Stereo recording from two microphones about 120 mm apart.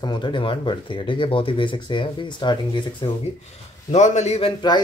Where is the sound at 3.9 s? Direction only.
75° left (ahead or behind).